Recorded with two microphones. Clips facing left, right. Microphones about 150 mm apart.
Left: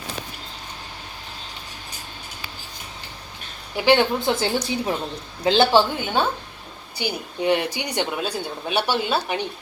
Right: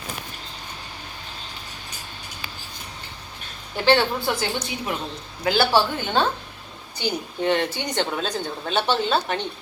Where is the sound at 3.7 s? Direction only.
15° left (ahead or behind).